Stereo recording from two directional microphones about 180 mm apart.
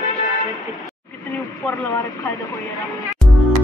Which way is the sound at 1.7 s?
15° left (ahead or behind).